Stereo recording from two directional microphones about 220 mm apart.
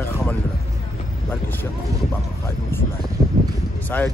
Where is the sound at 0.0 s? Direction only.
5° left (ahead or behind).